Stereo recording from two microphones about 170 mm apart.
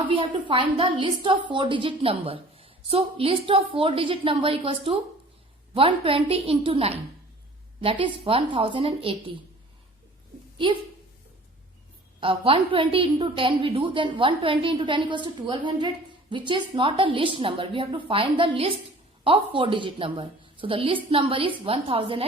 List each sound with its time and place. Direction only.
0.1 s a woman's voice: 30° right (ahead or behind)
12.2 s a woman's voice: 30° right (ahead or behind)